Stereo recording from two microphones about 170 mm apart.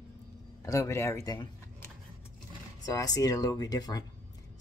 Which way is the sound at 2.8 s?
20° left (ahead or behind).